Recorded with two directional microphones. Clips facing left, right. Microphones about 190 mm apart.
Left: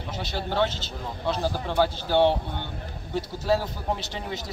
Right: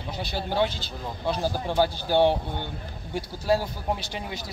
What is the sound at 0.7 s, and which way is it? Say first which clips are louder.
Speech: left 1 dB; 20° left (ahead or behind).